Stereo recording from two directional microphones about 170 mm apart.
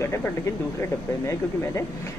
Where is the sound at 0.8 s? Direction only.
15° left (ahead or behind).